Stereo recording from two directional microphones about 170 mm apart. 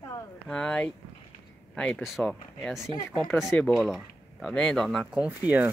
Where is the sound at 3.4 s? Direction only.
10° left (ahead or behind); by 5.6 s 10° right (ahead or behind).